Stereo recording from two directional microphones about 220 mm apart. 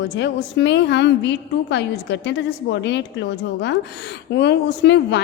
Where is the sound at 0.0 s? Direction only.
50° left (ahead or behind).